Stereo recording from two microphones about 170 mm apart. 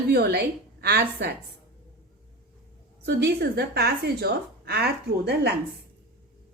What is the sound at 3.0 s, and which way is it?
A woman's voice, 75° right (ahead or behind).